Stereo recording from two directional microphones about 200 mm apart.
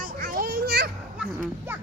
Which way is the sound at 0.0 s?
45° right (ahead or behind).